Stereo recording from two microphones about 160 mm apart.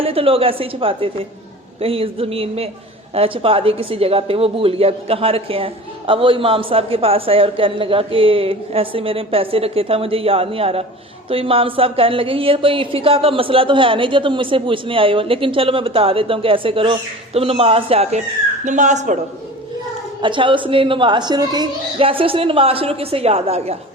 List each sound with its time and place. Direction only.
0.0 s a woman's voice: 35° right (ahead or behind)
20.2 s a woman's voice: 30° right (ahead or behind)